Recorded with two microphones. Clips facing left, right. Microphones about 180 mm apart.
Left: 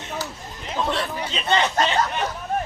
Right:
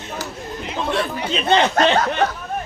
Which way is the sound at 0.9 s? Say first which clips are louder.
Right 4 dB; 55° right (ahead or behind).